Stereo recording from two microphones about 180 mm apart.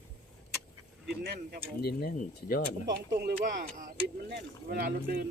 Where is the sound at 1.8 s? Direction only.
60° left (ahead or behind).